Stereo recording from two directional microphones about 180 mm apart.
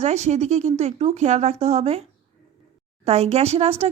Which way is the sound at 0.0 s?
40° right (ahead or behind).